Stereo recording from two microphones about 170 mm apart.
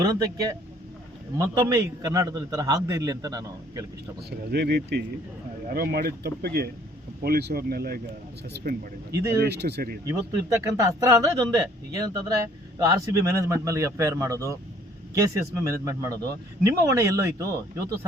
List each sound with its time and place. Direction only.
0.0 s a man's voice: 25° right (ahead or behind)
1.4 s a man's voice: 15° right (ahead or behind)
4.3 s a man's voice: 70° right (ahead or behind)
5.7 s a man's voice: 65° right (ahead or behind)
9.1 s a man's voice: 15° right (ahead or behind)
9.4 s a man's voice: 75° right (ahead or behind)
10.1 s a man's voice: 20° right (ahead or behind)